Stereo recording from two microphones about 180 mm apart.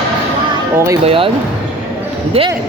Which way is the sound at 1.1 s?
30° right (ahead or behind).